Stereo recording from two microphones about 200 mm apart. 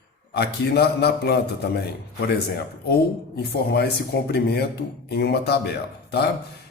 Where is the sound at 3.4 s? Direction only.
55° left (ahead or behind).